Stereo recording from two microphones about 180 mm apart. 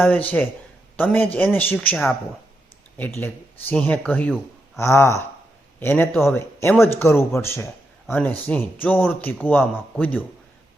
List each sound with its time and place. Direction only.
0.0 s a man's voice: 10° left (ahead or behind)